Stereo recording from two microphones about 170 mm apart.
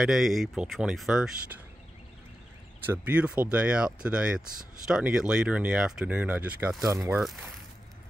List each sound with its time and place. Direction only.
0.0 s speech: centre (ahead or behind)
2.8 s speech: 10° right (ahead or behind)